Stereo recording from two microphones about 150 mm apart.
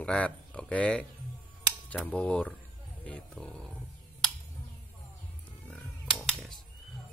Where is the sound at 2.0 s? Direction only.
10° left (ahead or behind).